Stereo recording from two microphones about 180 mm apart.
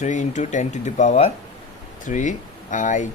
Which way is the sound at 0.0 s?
40° left (ahead or behind).